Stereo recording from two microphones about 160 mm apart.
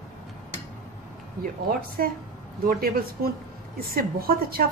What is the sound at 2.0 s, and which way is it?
A woman's voice, 70° right (ahead or behind).